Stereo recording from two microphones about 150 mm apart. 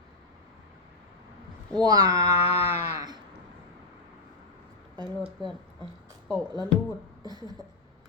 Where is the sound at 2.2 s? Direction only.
40° left (ahead or behind).